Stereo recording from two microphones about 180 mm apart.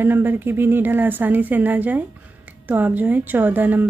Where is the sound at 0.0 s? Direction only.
10° right (ahead or behind).